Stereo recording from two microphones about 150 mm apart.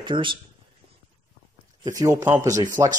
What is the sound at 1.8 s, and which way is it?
Speech, 20° right (ahead or behind).